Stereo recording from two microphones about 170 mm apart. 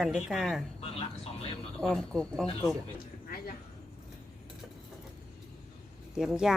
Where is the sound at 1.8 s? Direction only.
5° left (ahead or behind).